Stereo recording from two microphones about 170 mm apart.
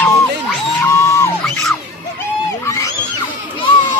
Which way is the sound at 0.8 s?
15° left (ahead or behind).